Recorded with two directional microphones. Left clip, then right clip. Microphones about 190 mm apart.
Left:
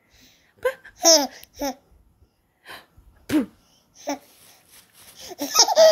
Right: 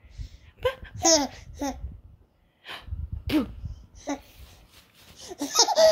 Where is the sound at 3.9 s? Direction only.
10° left (ahead or behind).